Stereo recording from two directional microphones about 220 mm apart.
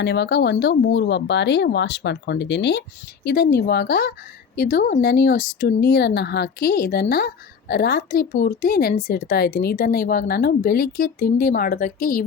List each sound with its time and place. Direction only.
0.0 s speech: 50° left (ahead or behind)